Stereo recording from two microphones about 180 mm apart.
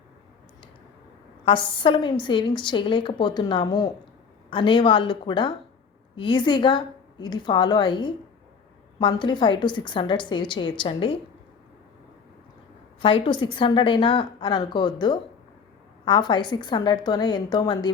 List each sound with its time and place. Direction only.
1.5 s a woman's voice: 30° left (ahead or behind)
13.0 s a woman's voice: 30° left (ahead or behind)